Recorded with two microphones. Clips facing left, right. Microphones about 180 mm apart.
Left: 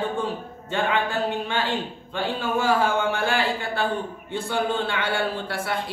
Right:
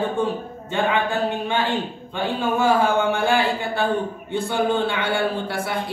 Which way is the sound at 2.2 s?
20° right (ahead or behind).